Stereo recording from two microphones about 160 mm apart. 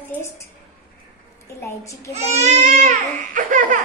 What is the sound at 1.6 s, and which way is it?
Speech, 20° left (ahead or behind).